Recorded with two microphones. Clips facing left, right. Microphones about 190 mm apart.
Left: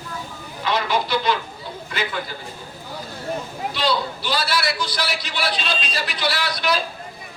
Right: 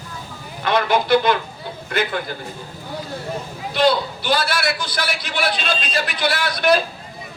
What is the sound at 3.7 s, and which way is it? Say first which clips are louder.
A man's voice: right 6 dB; 55° right (ahead or behind).